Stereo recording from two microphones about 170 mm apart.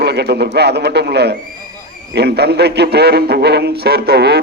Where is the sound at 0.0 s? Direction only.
75° right (ahead or behind).